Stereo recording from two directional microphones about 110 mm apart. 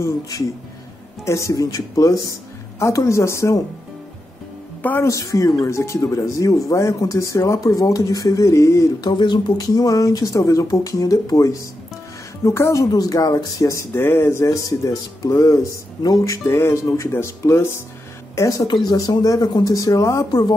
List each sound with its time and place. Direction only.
0.0 s speech: 30° left (ahead or behind)
4.8 s speech: 25° left (ahead or behind)
9.1 s speech: 40° left (ahead or behind)